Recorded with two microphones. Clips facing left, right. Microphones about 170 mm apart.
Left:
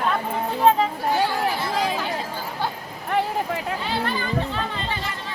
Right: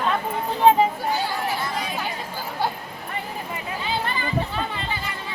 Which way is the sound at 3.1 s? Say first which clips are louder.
Left 9 dB; 80° left.